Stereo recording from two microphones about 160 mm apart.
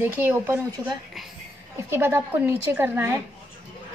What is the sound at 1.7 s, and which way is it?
A woman's voice, 15° right (ahead or behind).